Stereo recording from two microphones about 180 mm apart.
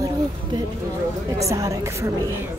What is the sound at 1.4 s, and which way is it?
Speech, 15° right (ahead or behind).